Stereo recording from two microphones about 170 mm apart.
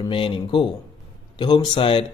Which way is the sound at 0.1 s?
30° left (ahead or behind).